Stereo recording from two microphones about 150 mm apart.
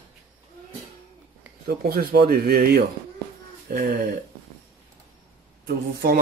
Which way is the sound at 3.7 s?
70° right (ahead or behind).